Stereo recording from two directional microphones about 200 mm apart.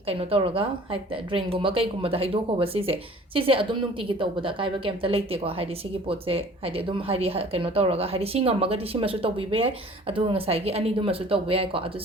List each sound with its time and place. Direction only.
0.1 s a woman's voice: 30° right (ahead or behind)